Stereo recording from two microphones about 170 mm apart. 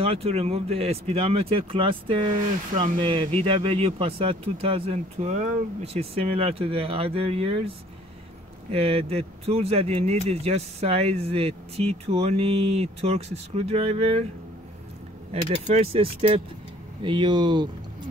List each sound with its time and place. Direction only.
0.0 s speech: 35° right (ahead or behind)
8.7 s speech: 35° right (ahead or behind)
15.5 s speech: 35° right (ahead or behind)